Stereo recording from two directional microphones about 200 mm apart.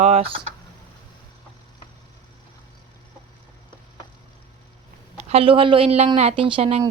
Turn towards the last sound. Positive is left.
turn(degrees=-30)  # may be behind; listen again after turning